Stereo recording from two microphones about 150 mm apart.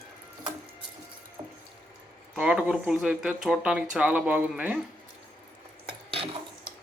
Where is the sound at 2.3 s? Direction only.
5° right (ahead or behind).